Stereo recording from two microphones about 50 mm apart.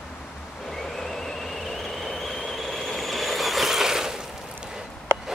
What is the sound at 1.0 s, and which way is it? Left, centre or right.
Train, centre.